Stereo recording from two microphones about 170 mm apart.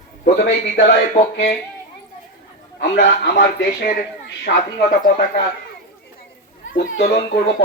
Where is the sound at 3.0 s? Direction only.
90° left; by 5.0 s 70° left (ahead or behind).